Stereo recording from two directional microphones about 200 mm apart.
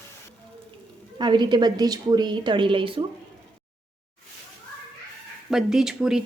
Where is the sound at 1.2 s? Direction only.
20° right (ahead or behind).